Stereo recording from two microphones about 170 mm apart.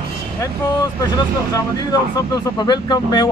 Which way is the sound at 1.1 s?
20° left (ahead or behind).